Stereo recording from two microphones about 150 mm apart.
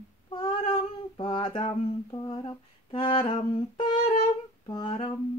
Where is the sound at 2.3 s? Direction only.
35° left (ahead or behind).